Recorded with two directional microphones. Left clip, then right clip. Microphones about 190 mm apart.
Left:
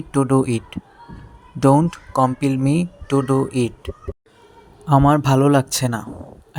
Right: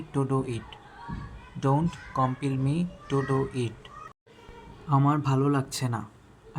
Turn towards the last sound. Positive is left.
turn(degrees=45)  # may be behind; listen again after turning